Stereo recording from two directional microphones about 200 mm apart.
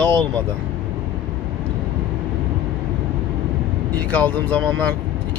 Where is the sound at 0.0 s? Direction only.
5° left (ahead or behind).